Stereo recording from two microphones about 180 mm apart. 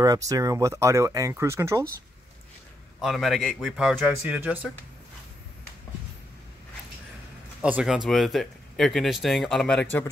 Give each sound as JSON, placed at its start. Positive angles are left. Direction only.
{"t": 0.0, "sound": "speech", "side_deg": -20}
{"t": 3.0, "sound": "speech", "side_deg": 0}
{"t": 7.6, "sound": "speech", "side_deg": -5}